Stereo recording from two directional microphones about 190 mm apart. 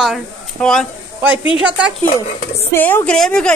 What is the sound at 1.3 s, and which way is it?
Speech, 30° left (ahead or behind).